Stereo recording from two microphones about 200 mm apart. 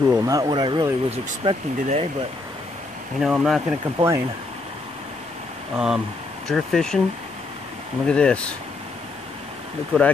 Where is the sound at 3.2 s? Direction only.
Centre (ahead or behind).